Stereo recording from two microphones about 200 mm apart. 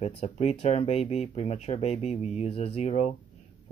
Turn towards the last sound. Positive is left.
turn(degrees=35)  # may be behind; listen again after turning